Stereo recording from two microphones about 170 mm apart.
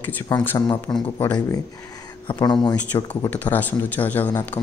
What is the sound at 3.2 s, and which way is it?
Speech, 10° left (ahead or behind).